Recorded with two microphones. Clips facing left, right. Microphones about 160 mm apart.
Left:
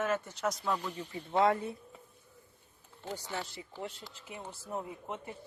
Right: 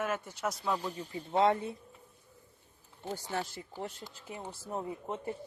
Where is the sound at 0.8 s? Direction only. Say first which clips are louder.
Right 1 dB; 35° right (ahead or behind).